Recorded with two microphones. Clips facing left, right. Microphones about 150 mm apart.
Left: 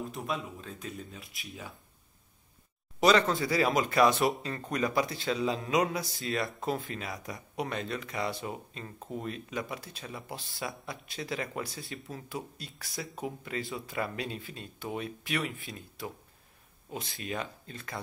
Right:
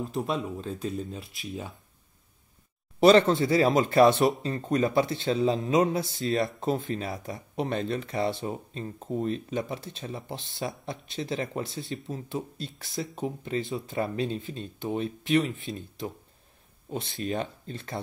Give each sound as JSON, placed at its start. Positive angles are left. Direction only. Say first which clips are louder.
{"t": 0.1, "sound": "a man's voice", "louder": "right 6 dB", "side_deg": -30}
{"t": 3.0, "sound": "a man's voice", "louder": "right 6 dB", "side_deg": -30}